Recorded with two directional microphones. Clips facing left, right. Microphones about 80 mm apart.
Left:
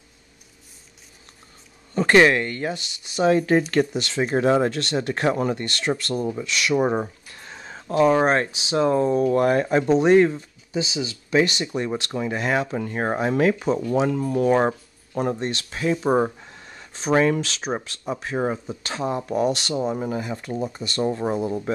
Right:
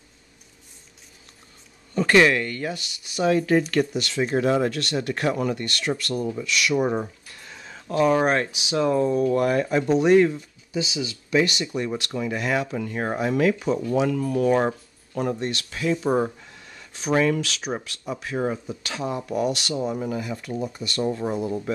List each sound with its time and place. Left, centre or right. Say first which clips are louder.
2.0 s speech: left 2 dB; left